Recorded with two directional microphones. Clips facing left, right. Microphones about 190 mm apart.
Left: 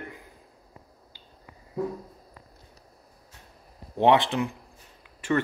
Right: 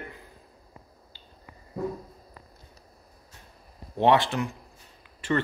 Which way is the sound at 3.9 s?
15° left (ahead or behind).